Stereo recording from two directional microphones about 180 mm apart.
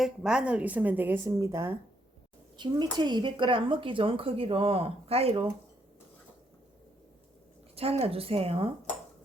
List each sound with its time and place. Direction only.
0.0 s a woman's voice: 5° right (ahead or behind); by 5.5 s 30° right (ahead or behind)
8.0 s speech: 30° right (ahead or behind)